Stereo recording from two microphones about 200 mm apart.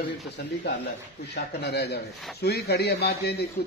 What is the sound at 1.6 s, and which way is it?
A man's voice, 55° left (ahead or behind).